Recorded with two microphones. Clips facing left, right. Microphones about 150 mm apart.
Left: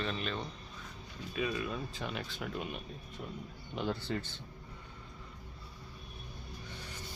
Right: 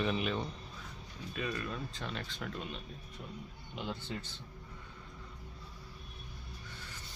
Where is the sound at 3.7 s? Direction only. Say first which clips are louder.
Left 5 dB; 45° left (ahead or behind).